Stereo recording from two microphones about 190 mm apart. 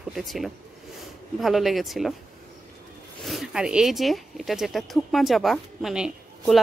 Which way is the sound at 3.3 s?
Centre (ahead or behind).